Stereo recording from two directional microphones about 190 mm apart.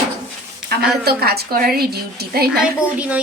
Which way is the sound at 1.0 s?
55° right (ahead or behind).